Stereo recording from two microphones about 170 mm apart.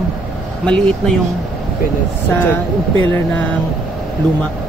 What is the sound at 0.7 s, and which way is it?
Speech, 5° left (ahead or behind).